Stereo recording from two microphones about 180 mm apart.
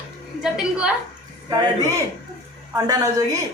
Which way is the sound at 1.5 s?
20° right (ahead or behind).